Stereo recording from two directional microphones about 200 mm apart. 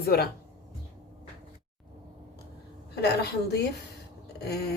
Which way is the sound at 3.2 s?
55° left (ahead or behind).